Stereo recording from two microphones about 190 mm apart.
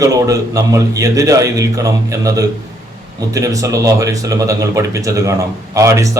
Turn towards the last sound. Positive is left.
turn(degrees=-15)  # may be behind; listen again after turning